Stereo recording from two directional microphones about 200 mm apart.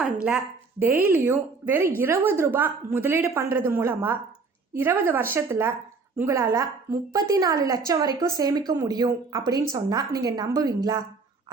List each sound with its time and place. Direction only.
0.0 s a woman's voice: 5° right (ahead or behind)